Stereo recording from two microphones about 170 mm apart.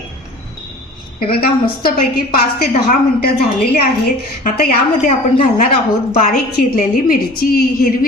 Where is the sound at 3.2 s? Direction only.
65° left (ahead or behind).